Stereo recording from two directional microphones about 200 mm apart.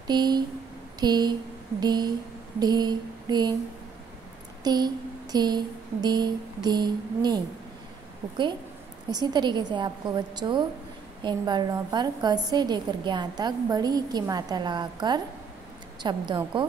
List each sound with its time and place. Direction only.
0.0 s speech: 20° right (ahead or behind)
0.9 s a sound: 20° right (ahead or behind)
1.8 s a woman's voice: 20° right (ahead or behind)
4.6 s a woman's voice: 20° right (ahead or behind)
9.1 s a woman's voice: 20° right (ahead or behind)